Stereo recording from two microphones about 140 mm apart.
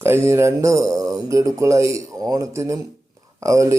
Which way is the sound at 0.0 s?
20° right (ahead or behind).